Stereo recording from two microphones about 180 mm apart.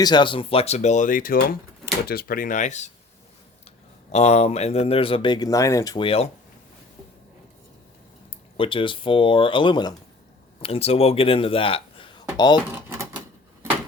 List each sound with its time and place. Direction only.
0.0 s speech: 25° left (ahead or behind); by 2.9 s 40° left (ahead or behind)
4.1 s speech: 35° left (ahead or behind)
8.5 s speech: 30° left (ahead or behind)